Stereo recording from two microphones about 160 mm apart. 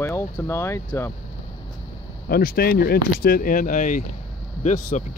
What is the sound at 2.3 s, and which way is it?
Speech, 70° left (ahead or behind).